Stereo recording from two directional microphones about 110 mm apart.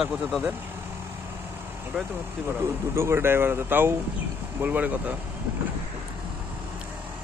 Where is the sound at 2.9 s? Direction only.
25° right (ahead or behind).